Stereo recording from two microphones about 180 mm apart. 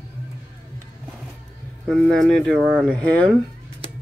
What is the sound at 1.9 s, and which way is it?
Speech, centre (ahead or behind).